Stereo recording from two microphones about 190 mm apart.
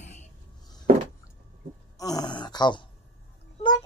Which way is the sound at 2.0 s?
20° left (ahead or behind).